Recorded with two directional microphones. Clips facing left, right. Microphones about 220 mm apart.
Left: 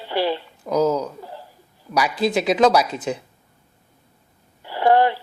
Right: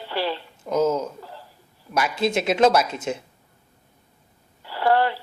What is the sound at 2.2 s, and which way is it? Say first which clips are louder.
Speech: left 1 dB; centre (ahead or behind).